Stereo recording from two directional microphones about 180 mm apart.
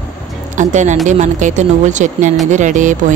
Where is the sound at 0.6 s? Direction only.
40° right (ahead or behind).